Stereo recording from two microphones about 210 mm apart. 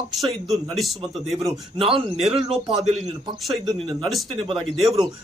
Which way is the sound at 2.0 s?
30° right (ahead or behind).